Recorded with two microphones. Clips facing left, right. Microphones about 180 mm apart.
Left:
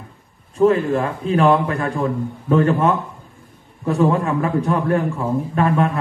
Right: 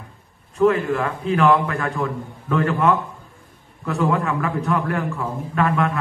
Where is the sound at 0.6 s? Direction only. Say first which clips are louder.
Left 2 dB; 30° left (ahead or behind).